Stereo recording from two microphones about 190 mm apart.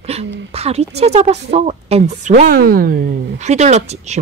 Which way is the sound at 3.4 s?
35° right (ahead or behind).